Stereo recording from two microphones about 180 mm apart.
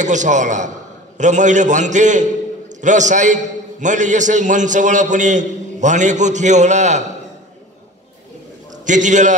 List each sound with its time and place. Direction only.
0.0 s a man's voice: 40° right (ahead or behind)
8.8 s a man's voice: 45° right (ahead or behind)